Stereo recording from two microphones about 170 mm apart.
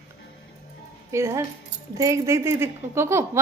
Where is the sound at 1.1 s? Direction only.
15° right (ahead or behind).